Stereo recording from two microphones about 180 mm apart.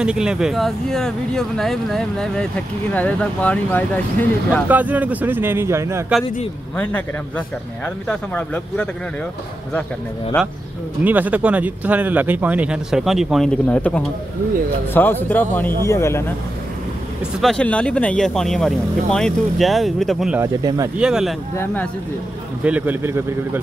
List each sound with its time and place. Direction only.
0.0 s speech: 5° right (ahead or behind)
4.6 s speech: 10° right (ahead or behind)
6.8 s speech: 10° left (ahead or behind)
11.1 s speech: 10° right (ahead or behind); by 16.3 s 15° left (ahead or behind)
17.4 s speech: 5° left (ahead or behind)
20.3 s speech: 20° right (ahead or behind)
21.0 s speech: 5° right (ahead or behind)
22.6 s speech: 10° right (ahead or behind)